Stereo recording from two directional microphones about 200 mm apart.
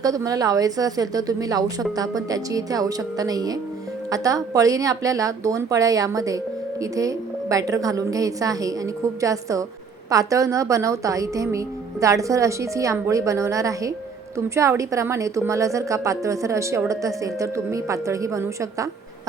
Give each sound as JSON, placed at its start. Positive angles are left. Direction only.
{"t": 0.0, "sound": "a woman's voice", "side_deg": -15}